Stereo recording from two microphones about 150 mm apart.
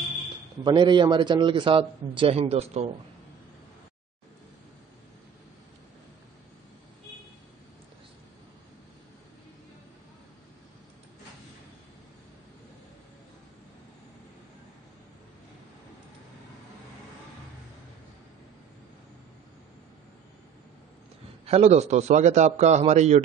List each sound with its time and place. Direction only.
0.7 s a man's voice: 30° right (ahead or behind)
21.5 s a man's voice: 45° right (ahead or behind)